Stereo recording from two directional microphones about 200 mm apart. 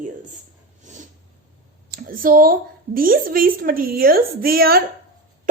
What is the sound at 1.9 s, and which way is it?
A woman's voice, 45° right (ahead or behind).